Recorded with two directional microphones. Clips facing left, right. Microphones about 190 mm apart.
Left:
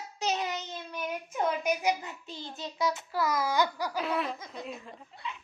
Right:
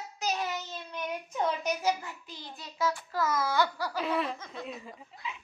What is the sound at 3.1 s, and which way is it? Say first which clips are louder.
Speech: left 1 dB; 10° left (ahead or behind).